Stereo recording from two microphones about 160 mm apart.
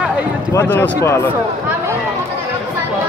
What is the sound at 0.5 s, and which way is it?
Speech, 10° left (ahead or behind).